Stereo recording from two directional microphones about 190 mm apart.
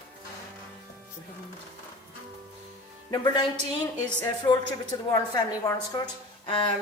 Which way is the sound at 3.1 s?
20° left (ahead or behind).